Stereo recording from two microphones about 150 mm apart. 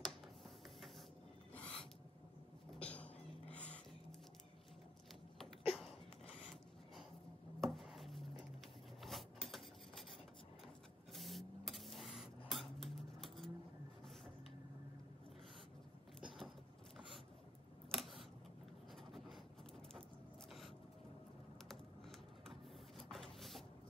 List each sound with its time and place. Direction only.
2.8 s music: 10° left (ahead or behind)
5.7 s a sound: 40° left (ahead or behind)
7.6 s a sound: centre (ahead or behind)
9.0 s filing: centre (ahead or behind)
11.1 s spray: centre (ahead or behind)
16.3 s a sound: centre (ahead or behind)
17.9 s camera: centre (ahead or behind)
19.1 s writing: centre (ahead or behind)
22.5 s printer: centre (ahead or behind)